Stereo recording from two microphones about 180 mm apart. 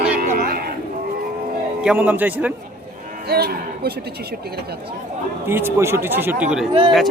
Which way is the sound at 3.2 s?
60° right (ahead or behind).